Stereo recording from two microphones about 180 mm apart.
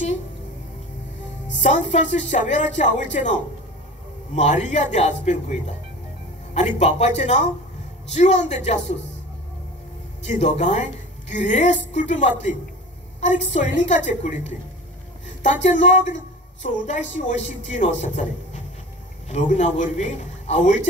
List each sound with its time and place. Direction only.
1.6 s speech: 40° left (ahead or behind)
4.6 s speech: 40° left (ahead or behind)
10.2 s speech: 40° left (ahead or behind)